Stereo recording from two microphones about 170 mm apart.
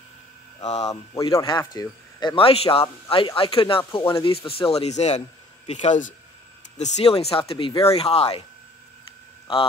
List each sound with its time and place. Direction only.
0.8 s speech: 20° left (ahead or behind); by 8.4 s 35° left (ahead or behind)